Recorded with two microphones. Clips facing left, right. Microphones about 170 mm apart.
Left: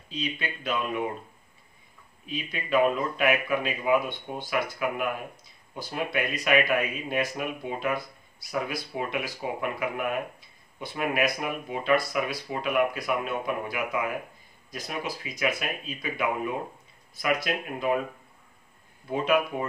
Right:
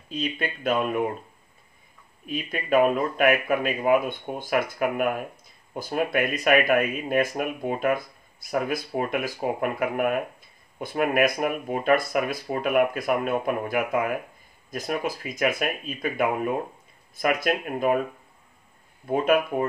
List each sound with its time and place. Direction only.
0.1 s speech: 50° right (ahead or behind)
2.2 s speech: 50° right (ahead or behind)
19.1 s speech: 50° right (ahead or behind)